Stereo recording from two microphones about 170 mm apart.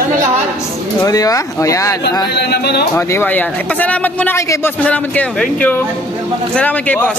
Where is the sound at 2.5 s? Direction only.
75° left (ahead or behind).